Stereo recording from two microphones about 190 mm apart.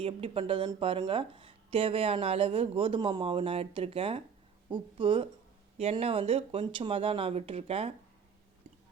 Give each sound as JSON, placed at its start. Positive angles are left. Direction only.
{"t": 0.0, "sound": "speech", "side_deg": -30}